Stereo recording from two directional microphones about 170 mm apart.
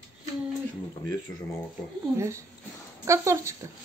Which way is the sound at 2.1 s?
15° right (ahead or behind).